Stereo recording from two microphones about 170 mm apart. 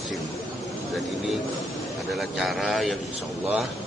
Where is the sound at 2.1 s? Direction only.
Centre (ahead or behind).